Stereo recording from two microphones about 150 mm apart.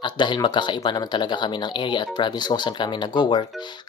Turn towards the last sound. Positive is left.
turn(degrees=30)  # may be behind; listen again after turning